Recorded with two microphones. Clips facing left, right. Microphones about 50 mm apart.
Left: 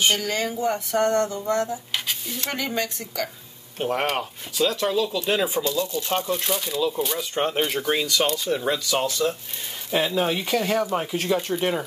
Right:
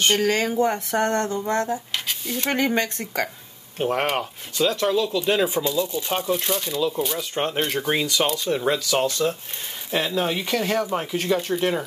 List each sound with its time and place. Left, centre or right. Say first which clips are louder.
0.1 s speech: right 4 dB; right
3.8 s speech: right 2 dB; centre
5.6 s speech: right 1 dB; centre
7.8 s speech: even; centre